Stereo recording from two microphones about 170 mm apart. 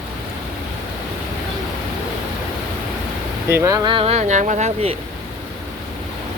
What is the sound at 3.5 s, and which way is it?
Speech, 15° right (ahead or behind).